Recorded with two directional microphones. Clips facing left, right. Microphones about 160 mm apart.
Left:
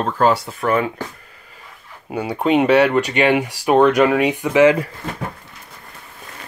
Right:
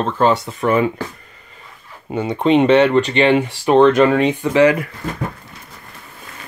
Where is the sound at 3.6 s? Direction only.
5° left (ahead or behind).